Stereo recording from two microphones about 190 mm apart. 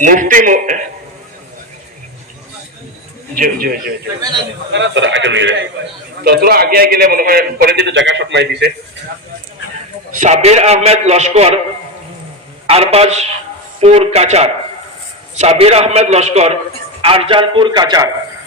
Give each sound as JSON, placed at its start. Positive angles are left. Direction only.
{"t": 0.0, "sound": "a man's voice", "side_deg": -45}
{"t": 3.3, "sound": "a man's voice", "side_deg": -50}
{"t": 4.7, "sound": "a man's voice", "side_deg": -70}
{"t": 6.2, "sound": "a man's voice", "side_deg": -55}
{"t": 10.1, "sound": "a man's voice", "side_deg": -40}
{"t": 12.6, "sound": "a man's voice", "side_deg": -30}